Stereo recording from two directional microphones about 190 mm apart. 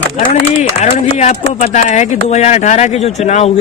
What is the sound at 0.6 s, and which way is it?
Speech, 35° left (ahead or behind).